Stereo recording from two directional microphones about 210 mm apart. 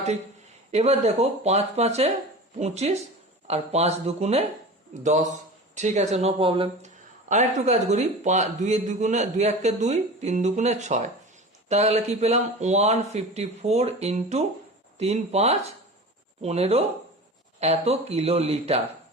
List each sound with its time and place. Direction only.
0.7 s speech: 30° right (ahead or behind)